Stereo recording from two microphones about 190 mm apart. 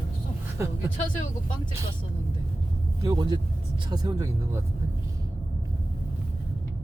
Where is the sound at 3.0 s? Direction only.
20° right (ahead or behind).